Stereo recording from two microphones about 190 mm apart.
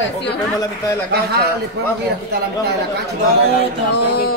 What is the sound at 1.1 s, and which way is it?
Speech, 55° right (ahead or behind).